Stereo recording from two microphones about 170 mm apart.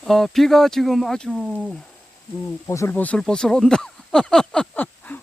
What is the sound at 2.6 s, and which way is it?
Speech, 15° left (ahead or behind).